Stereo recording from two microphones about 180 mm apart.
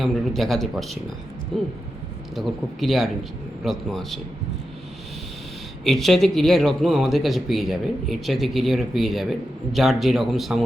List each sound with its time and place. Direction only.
0.0 s speech: centre (ahead or behind)
5.8 s speech: centre (ahead or behind)